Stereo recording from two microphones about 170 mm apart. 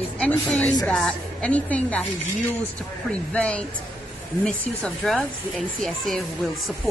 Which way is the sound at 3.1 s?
5° left (ahead or behind).